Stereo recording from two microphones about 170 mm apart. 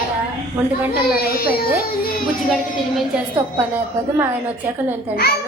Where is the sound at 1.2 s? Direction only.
65° left (ahead or behind).